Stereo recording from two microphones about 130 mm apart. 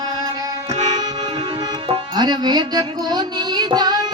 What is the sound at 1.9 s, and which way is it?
Music, 35° right (ahead or behind).